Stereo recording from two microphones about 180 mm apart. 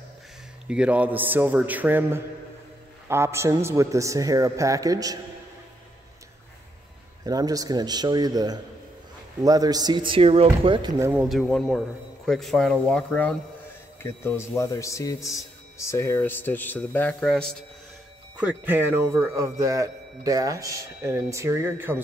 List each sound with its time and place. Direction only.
0.7 s speech: 5° right (ahead or behind)
7.2 s speech: 20° right (ahead or behind)
11.2 s speech: centre (ahead or behind)
18.4 s speech: 10° right (ahead or behind)